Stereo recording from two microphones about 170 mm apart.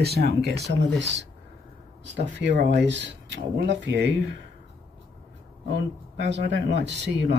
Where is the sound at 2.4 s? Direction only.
90° right.